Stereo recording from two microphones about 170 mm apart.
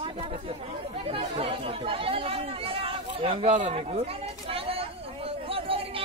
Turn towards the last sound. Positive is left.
turn(degrees=-35)  # may be behind; listen again after turning